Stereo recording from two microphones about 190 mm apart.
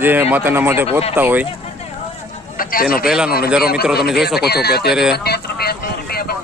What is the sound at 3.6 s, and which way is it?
Speech, 55° left (ahead or behind).